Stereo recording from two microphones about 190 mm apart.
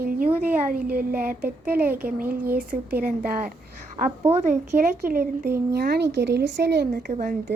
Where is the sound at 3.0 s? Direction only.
50° right (ahead or behind).